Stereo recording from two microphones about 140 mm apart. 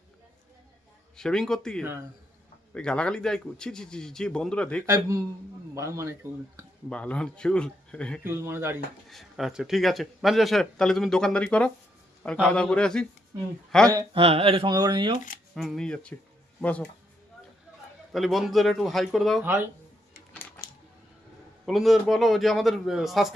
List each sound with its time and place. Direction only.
1.1 s a man's voice: 5° left (ahead or behind)
1.8 s speech: 15° right (ahead or behind)
2.7 s a man's voice: 10° left (ahead or behind)
4.9 s a man's voice: 20° right (ahead or behind)
6.9 s speech: 10° left (ahead or behind)
8.2 s speech: 15° right (ahead or behind)
9.0 s a man's voice: centre (ahead or behind)
14.1 s speech: 45° right (ahead or behind)
14.7 s speech: 30° right (ahead or behind)
15.5 s a man's voice: centre (ahead or behind)
18.1 s a man's voice: centre (ahead or behind)
19.4 s speech: 15° right (ahead or behind)
20.3 s a sound: 15° left (ahead or behind)
21.7 s a man's voice: centre (ahead or behind)